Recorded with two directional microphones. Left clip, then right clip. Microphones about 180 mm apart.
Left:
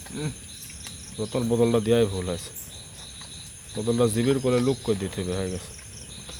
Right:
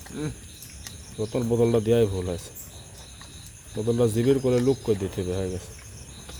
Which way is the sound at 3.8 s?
10° right (ahead or behind).